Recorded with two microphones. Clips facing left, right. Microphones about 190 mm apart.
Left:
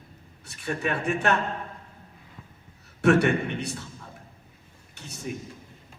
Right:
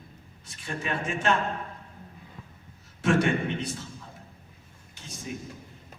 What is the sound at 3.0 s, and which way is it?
Speech, 65° left (ahead or behind).